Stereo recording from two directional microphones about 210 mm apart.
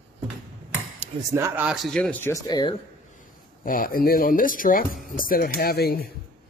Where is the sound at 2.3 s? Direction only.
20° left (ahead or behind).